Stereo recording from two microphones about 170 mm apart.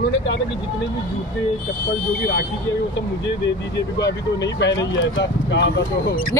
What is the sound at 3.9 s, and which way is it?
Speech, 90° left.